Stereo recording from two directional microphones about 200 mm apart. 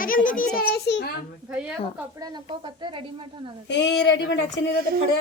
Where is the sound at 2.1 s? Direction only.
20° right (ahead or behind).